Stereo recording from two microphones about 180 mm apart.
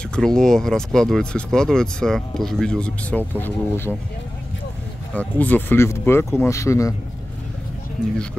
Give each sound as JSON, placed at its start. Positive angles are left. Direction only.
{"t": 0.1, "sound": "speech", "side_deg": 5}
{"t": 5.1, "sound": "speech", "side_deg": 10}